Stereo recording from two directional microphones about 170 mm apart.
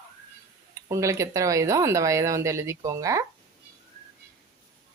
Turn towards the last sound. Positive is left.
turn(degrees=-20)  # may be behind; listen again after turning